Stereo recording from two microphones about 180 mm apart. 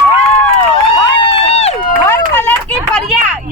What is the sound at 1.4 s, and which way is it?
Run, 35° left (ahead or behind).